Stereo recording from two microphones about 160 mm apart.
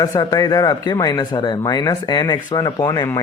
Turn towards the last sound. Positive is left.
turn(degrees=20)  # may be behind; listen again after turning